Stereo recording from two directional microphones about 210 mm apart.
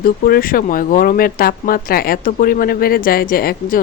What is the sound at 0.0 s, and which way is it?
Speech, 45° left (ahead or behind).